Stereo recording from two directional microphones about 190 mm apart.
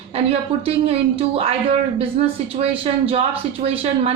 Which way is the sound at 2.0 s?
30° right (ahead or behind).